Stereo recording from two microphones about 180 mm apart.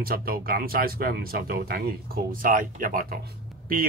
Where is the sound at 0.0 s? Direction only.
55° right (ahead or behind).